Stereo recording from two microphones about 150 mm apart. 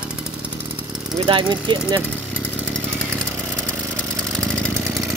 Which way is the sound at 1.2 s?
35° right (ahead or behind).